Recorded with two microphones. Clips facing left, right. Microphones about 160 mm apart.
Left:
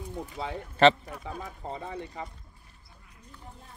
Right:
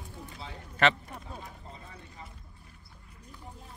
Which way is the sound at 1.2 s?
90° left.